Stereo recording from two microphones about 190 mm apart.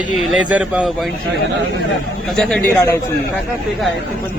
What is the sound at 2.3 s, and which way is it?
Speech, 5° left (ahead or behind).